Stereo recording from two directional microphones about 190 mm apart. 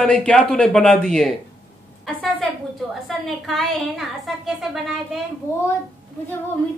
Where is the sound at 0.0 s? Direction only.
5° left (ahead or behind).